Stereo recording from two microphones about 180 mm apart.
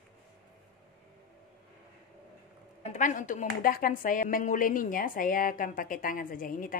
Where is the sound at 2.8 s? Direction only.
45° left (ahead or behind).